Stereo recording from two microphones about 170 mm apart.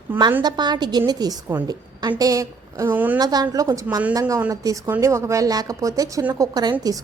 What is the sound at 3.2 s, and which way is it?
A woman's voice, 25° right (ahead or behind).